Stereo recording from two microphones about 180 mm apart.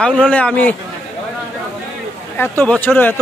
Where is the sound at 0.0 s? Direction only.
5° left (ahead or behind).